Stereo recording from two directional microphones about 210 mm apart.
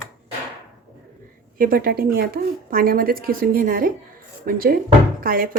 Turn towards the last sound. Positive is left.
turn(degrees=-45)  # may be behind; listen again after turning